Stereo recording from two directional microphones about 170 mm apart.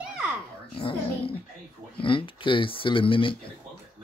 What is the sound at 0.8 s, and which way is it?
Dog, 30° left (ahead or behind).